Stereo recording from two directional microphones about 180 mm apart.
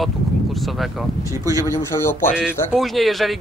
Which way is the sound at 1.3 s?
20° right (ahead or behind).